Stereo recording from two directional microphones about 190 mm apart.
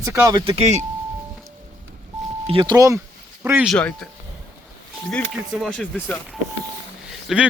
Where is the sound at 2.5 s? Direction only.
25° right (ahead or behind).